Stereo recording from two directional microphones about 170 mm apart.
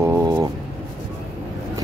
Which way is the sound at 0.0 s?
15° right (ahead or behind).